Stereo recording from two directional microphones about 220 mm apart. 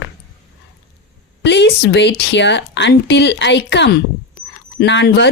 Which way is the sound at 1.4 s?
50° left (ahead or behind).